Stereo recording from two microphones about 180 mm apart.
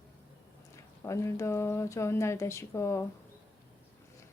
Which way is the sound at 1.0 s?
15° left (ahead or behind).